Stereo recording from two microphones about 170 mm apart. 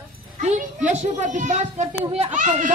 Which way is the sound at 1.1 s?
45° right (ahead or behind).